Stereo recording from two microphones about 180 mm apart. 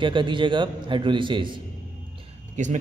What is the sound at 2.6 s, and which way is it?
Speech, 40° right (ahead or behind).